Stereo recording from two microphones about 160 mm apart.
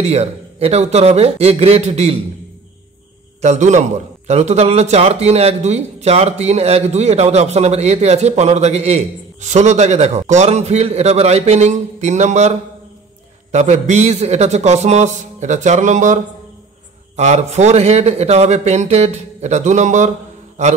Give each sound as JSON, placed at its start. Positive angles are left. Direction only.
{"t": 0.0, "sound": "a man's voice", "side_deg": -40}
{"t": 3.3, "sound": "a man's voice", "side_deg": -45}
{"t": 17.2, "sound": "a man's voice", "side_deg": -45}